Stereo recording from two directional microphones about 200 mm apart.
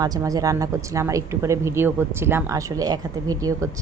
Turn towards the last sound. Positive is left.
turn(degrees=-15)  # may be behind; listen again after turning